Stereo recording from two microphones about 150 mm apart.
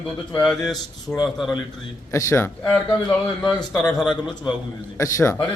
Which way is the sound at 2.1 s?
15° left (ahead or behind).